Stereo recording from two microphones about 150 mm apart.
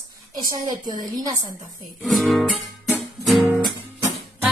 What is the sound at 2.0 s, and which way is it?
Music, centre (ahead or behind).